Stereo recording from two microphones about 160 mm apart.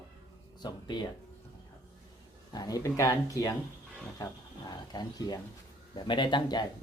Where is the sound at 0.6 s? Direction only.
25° left (ahead or behind).